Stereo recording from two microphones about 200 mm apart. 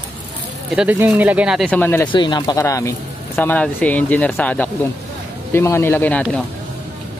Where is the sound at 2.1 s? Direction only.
20° left (ahead or behind); by 6.4 s 5° left (ahead or behind).